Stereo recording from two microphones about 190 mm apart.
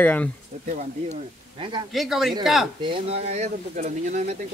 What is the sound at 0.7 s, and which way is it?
Speech, 40° right (ahead or behind).